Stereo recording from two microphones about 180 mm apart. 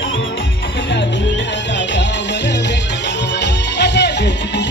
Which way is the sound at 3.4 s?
70° left (ahead or behind).